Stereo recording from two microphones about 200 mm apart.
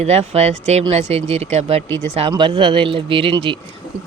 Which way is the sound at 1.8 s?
10° left (ahead or behind).